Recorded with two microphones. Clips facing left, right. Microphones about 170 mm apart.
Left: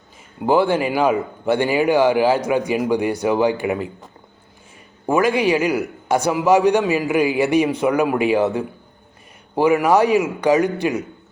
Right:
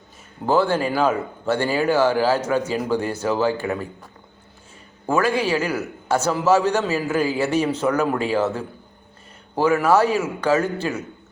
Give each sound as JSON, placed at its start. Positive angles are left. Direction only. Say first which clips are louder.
{"t": 0.4, "sound": "a man's voice", "louder": "left 2 dB", "side_deg": 15}